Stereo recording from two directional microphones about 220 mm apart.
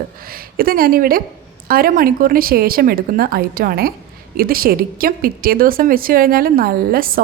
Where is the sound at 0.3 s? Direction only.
40° right (ahead or behind).